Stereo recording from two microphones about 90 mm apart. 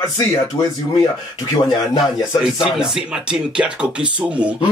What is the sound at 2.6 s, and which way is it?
Speech, 5° right (ahead or behind).